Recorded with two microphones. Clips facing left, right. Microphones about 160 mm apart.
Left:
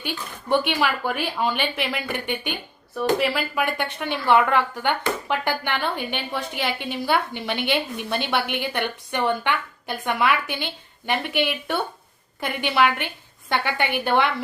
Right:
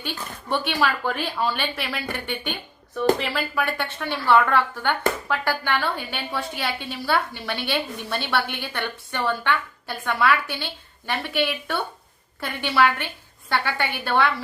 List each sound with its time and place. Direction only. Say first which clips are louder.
0.0 s a woman's voice: left 1 dB; 15° left (ahead or behind)